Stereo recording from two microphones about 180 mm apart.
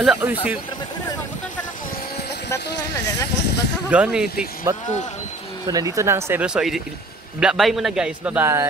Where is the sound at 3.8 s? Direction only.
5° right (ahead or behind).